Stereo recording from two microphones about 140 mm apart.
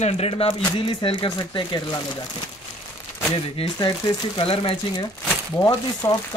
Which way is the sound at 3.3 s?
40° left (ahead or behind).